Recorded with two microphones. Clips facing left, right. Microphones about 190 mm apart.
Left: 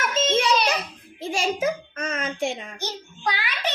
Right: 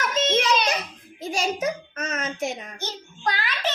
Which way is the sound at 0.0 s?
30° left (ahead or behind).